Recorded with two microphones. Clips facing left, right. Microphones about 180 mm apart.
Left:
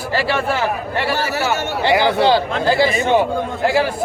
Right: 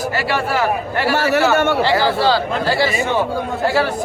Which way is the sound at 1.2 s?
55° right (ahead or behind).